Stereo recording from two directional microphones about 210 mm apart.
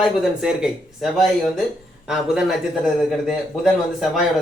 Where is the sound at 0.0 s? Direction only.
Centre (ahead or behind).